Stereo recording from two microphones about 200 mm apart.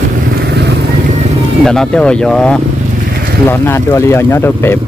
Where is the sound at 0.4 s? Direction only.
55° right (ahead or behind).